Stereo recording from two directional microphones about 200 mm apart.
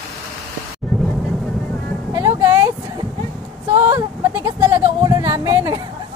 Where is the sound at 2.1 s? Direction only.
15° right (ahead or behind).